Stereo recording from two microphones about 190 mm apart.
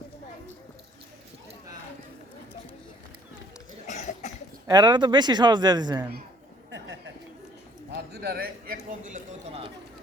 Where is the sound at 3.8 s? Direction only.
35° left (ahead or behind).